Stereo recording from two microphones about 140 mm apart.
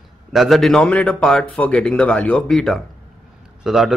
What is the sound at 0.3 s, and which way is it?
A man's voice, centre (ahead or behind).